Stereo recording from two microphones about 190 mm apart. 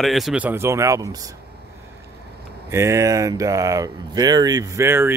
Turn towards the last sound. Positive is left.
turn(degrees=-10)  # may be behind; listen again after turning